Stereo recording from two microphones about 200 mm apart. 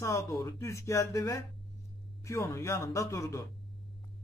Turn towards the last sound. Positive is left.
turn(degrees=15)  # may be behind; listen again after turning